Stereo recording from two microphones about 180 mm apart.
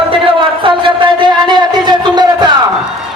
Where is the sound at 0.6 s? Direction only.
30° right (ahead or behind).